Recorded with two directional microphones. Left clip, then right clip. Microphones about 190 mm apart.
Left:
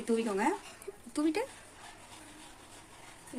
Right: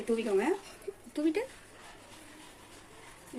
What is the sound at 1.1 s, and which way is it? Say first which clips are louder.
Speech: right 1 dB; 40° left (ahead or behind).